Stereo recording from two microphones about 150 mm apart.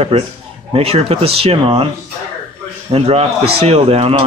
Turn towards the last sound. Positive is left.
turn(degrees=-40)  # may be behind; listen again after turning